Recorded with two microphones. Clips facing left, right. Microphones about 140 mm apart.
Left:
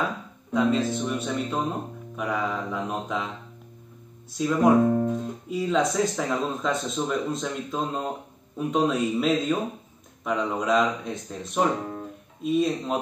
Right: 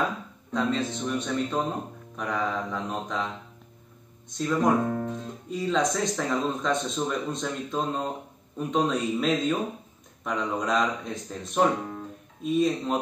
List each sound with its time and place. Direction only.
0.5 s speech: 10° left (ahead or behind)
4.3 s speech: 10° left (ahead or behind)
4.8 s guitar: 20° left (ahead or behind)
5.5 s speech: 5° left (ahead or behind)